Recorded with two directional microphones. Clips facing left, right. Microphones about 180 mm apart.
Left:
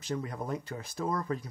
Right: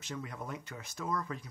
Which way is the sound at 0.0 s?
35° left (ahead or behind).